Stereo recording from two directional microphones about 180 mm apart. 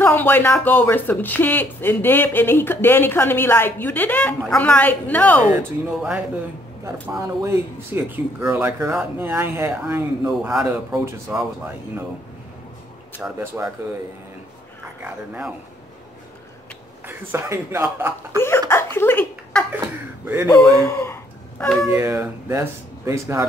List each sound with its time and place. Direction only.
0.0 s speech: 10° left (ahead or behind)
6.8 s speech: 15° right (ahead or behind)
11.2 s speech: 15° right (ahead or behind)
13.2 s speech: 10° right (ahead or behind)
15.0 s speech: 5° right (ahead or behind)
17.0 s speech: 15° right (ahead or behind)
18.4 s speech: 15° left (ahead or behind)
20.8 s a sound: 15° left (ahead or behind)
21.8 s speech: 15° right (ahead or behind)